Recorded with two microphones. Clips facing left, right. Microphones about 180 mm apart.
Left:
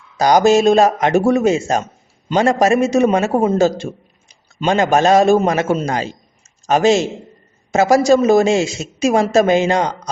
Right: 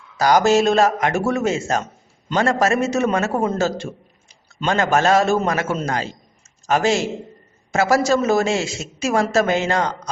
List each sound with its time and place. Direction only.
0.2 s a man's voice: 20° left (ahead or behind)